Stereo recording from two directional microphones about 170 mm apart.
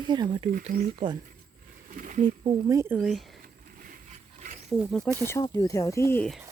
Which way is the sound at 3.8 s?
50° right (ahead or behind).